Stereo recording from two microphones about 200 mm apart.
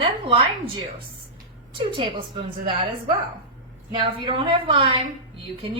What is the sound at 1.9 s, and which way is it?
Speech, 25° right (ahead or behind).